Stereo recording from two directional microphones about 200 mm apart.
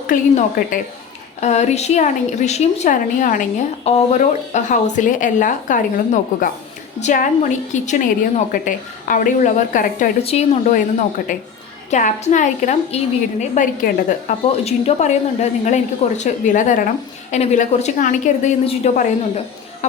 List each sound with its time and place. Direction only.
0.1 s a woman's voice: 40° left (ahead or behind)